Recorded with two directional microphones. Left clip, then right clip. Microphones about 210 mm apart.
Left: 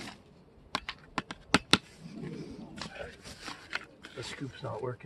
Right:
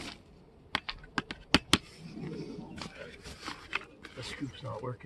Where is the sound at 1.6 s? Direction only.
25° left (ahead or behind).